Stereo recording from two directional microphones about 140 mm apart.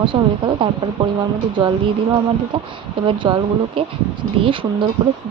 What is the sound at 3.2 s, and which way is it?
Speech, 35° right (ahead or behind).